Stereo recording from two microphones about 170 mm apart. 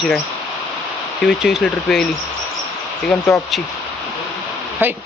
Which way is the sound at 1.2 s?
Centre (ahead or behind).